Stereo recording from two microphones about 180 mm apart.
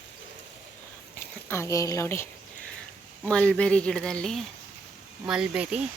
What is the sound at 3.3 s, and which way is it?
A woman's voice, 5° left (ahead or behind).